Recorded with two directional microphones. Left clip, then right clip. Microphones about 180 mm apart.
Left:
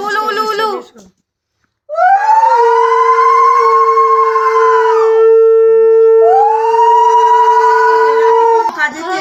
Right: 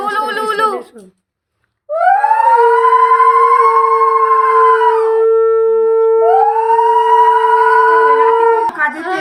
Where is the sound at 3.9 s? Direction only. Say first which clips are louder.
Left 1 dB; 30° left (ahead or behind).